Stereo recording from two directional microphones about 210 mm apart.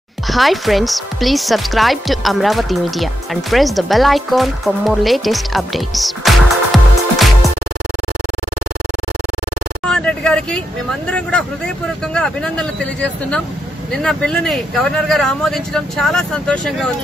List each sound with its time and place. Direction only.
0.3 s speech: centre (ahead or behind)
9.8 s vehicle: 5° left (ahead or behind)
11.1 s speech: 5° left (ahead or behind)